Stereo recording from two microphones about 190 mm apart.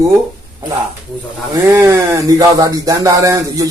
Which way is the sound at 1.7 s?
15° right (ahead or behind).